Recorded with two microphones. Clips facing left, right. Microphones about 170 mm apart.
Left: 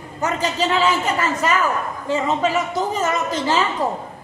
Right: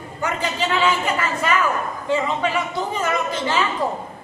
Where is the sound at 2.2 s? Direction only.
40° left (ahead or behind).